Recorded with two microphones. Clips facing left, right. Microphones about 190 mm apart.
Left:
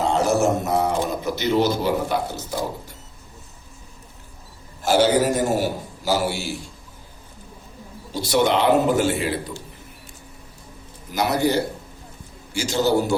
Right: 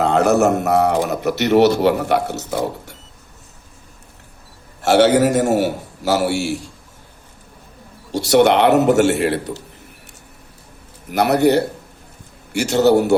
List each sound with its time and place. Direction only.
0.0 s a man's voice: 65° right (ahead or behind)
4.8 s a man's voice: 75° right (ahead or behind)
8.1 s a man's voice: 80° right
11.1 s a man's voice: 65° right (ahead or behind)